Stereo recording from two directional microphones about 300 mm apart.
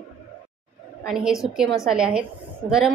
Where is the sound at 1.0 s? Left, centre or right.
Centre.